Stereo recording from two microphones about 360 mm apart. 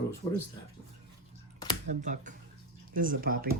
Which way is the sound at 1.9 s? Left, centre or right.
Centre.